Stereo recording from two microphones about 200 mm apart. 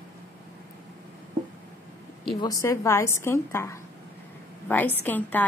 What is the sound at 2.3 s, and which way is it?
A woman's voice, 20° left (ahead or behind).